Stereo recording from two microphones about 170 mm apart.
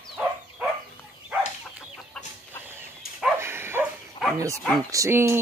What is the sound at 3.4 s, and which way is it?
Dog, 15° right (ahead or behind).